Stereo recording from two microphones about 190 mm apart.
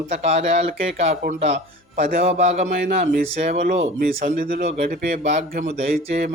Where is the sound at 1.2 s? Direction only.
60° right (ahead or behind).